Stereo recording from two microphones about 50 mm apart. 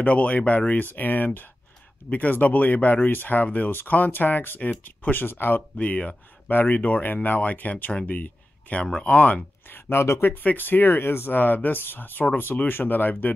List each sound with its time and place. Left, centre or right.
0.0 s speech: left
5.8 s speech: left
8.1 s a sound: left
9.0 s speech: left
9.8 s speech: left
10.2 s speech: left